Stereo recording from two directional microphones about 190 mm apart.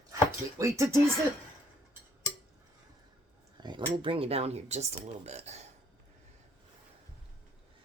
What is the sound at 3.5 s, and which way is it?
Speech, 25° right (ahead or behind).